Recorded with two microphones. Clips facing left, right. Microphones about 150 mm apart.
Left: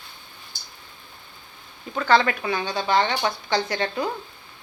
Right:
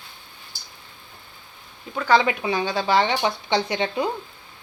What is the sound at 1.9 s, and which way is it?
Speech, 10° right (ahead or behind).